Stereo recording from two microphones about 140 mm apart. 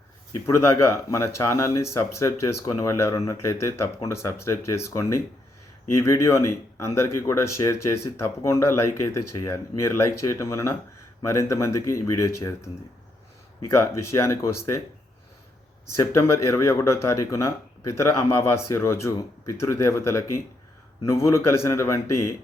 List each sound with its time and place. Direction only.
1.1 s speech: 20° left (ahead or behind)
16.1 s speech: 20° left (ahead or behind)